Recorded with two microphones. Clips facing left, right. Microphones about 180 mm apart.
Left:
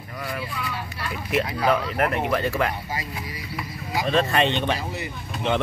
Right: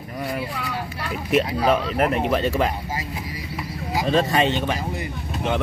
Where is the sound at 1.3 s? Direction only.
30° right (ahead or behind).